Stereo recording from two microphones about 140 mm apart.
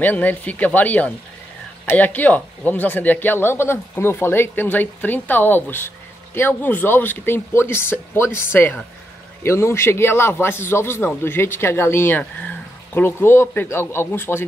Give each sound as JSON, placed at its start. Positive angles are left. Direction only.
{"t": 0.0, "sound": "speech", "side_deg": 10}